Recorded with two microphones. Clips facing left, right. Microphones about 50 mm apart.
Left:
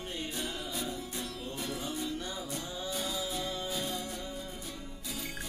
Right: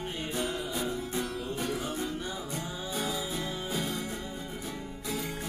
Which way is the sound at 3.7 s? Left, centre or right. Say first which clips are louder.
Right 3 dB; right.